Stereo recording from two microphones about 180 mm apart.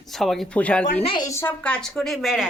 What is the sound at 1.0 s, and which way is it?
Speech, 30° left (ahead or behind).